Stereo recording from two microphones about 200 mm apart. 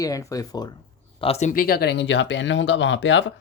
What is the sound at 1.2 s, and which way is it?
Speech, 30° left (ahead or behind).